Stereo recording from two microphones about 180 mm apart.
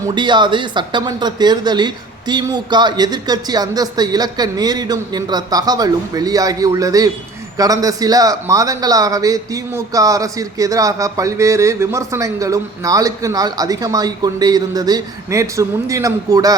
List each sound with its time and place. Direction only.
0.0 s a man's voice: 25° right (ahead or behind)